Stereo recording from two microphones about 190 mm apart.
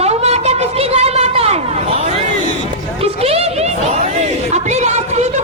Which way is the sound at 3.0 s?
30° right (ahead or behind).